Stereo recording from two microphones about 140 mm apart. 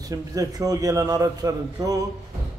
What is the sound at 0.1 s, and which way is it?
A man's voice, 25° right (ahead or behind).